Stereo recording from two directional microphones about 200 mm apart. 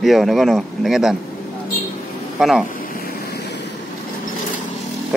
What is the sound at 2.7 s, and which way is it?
Vehicle, 45° left (ahead or behind).